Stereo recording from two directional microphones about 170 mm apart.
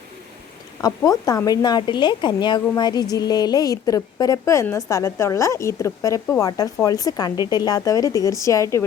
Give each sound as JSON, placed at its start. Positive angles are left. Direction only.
{"t": 0.8, "sound": "a woman's voice", "side_deg": 20}